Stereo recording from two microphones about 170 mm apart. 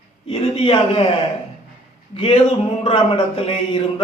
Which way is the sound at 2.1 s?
35° left (ahead or behind).